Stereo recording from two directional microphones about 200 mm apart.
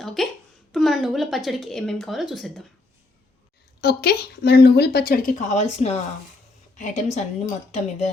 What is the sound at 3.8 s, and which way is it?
A woman's voice, 55° left (ahead or behind).